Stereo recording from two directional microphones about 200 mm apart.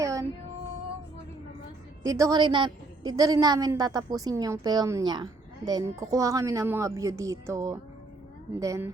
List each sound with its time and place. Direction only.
0.0 s music: 15° right (ahead or behind)
2.0 s a woman's voice: 15° right (ahead or behind)